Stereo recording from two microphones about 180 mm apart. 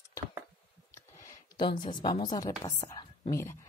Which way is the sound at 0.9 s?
20° left (ahead or behind).